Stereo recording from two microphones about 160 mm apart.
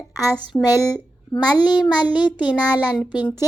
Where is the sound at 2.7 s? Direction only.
5° right (ahead or behind).